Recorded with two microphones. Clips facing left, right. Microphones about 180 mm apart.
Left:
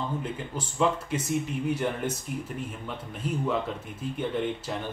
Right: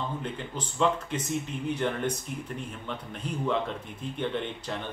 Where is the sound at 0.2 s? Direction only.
10° left (ahead or behind).